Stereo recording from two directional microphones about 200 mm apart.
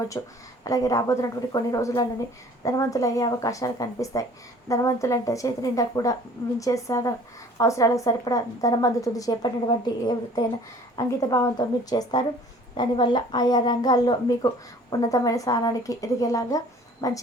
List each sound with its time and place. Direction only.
0.1 s a woman's voice: 20° left (ahead or behind)